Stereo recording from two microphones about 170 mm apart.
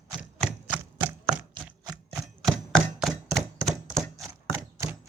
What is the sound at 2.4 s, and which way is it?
Chopping, centre (ahead or behind).